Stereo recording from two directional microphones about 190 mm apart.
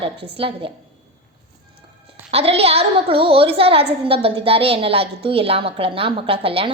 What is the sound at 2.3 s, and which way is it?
A woman's voice, 30° right (ahead or behind).